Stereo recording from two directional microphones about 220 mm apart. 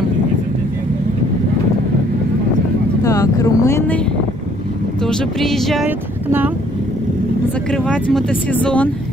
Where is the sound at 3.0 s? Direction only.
15° left (ahead or behind).